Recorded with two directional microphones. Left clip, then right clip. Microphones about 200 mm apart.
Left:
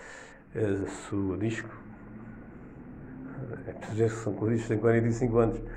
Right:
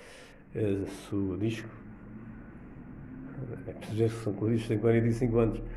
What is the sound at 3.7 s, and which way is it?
Speech, 10° right (ahead or behind).